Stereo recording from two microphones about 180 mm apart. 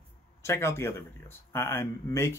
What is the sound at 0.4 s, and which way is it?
Speech, 15° left (ahead or behind).